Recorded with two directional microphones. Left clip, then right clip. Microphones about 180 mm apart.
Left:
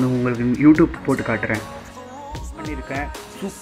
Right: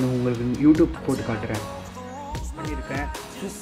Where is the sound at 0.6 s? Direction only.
25° left (ahead or behind).